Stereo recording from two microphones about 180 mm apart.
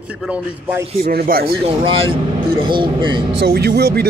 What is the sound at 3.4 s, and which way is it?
Speech, 60° right (ahead or behind).